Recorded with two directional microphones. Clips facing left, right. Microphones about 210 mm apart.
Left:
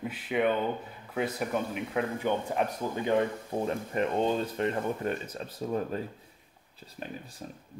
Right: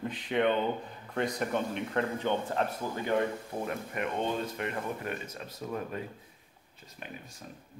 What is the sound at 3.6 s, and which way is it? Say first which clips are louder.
Speech: left 5 dB; 35° left (ahead or behind).